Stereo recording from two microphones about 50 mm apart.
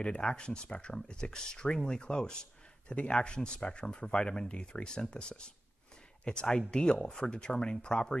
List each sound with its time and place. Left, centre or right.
0.0 s speech: centre